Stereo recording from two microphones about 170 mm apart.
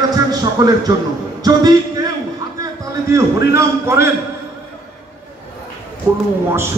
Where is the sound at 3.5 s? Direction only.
15° right (ahead or behind).